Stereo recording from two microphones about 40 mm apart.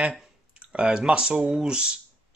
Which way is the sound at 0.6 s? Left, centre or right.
Right.